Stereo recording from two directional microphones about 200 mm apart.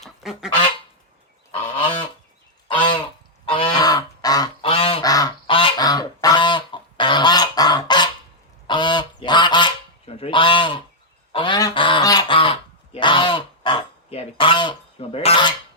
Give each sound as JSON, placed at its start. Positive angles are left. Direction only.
{"t": 0.0, "sound": "goose", "side_deg": 0}
{"t": 1.8, "sound": "goose", "side_deg": 25}